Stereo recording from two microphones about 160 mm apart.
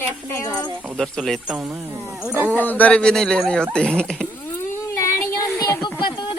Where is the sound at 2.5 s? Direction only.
10° left (ahead or behind).